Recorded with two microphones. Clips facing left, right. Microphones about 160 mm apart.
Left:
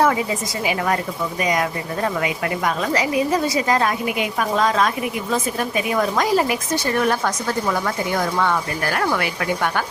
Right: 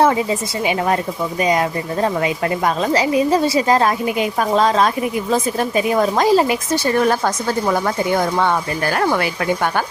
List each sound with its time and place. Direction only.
0.0 s a woman's voice: 25° right (ahead or behind)